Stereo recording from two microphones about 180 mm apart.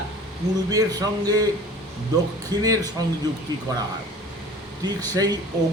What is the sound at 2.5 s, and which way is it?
Speech, 20° right (ahead or behind).